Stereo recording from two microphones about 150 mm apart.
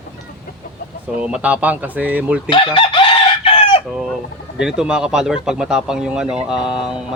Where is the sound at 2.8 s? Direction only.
35° left (ahead or behind).